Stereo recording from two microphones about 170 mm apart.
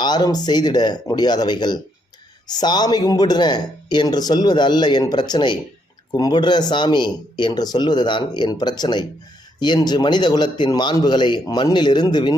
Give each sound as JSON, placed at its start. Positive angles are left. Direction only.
{"t": 0.0, "sound": "speech", "side_deg": 25}